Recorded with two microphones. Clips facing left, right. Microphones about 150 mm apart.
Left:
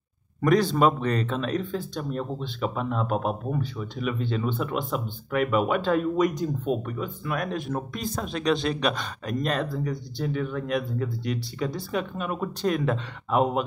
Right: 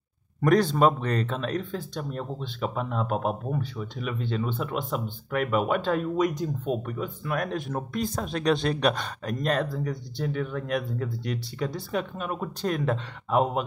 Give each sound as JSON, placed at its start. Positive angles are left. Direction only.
{"t": 0.4, "sound": "speech", "side_deg": -50}